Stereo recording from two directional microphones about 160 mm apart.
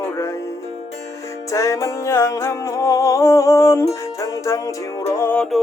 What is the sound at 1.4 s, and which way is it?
Music, 20° left (ahead or behind).